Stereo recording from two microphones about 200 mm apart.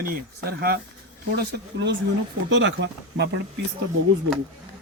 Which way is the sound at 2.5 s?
65° right (ahead or behind).